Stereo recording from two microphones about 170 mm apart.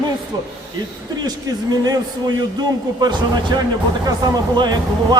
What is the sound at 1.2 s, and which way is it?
Speech, 20° right (ahead or behind).